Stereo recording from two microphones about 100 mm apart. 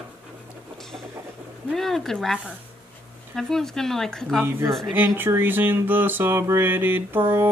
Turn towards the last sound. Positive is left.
turn(degrees=-20)  # may be behind; listen again after turning